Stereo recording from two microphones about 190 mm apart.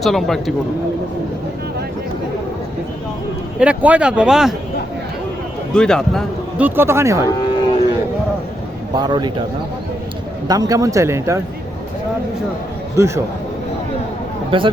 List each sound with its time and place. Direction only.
0.0 s speech: centre (ahead or behind)
3.6 s speech: 5° right (ahead or behind)
5.7 s speech: 5° left (ahead or behind)
6.6 s speech: 10° right (ahead or behind)
7.3 s cattle: 20° left (ahead or behind)
9.0 s speech: 20° right (ahead or behind)
10.5 s speech: 20° right (ahead or behind)
13.0 s speech: 15° right (ahead or behind)
14.5 s speech: 30° right (ahead or behind)